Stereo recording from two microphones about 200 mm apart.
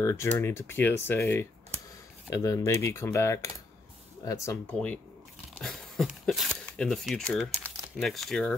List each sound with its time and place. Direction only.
0.0 s speech: 15° left (ahead or behind)
5.6 s a sound: centre (ahead or behind)
6.6 s speech: 5° left (ahead or behind)